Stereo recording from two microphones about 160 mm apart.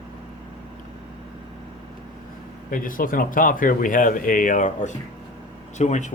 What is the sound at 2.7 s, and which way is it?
Speech, 60° left (ahead or behind).